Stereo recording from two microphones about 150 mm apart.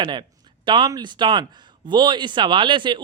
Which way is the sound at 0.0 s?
30° right (ahead or behind).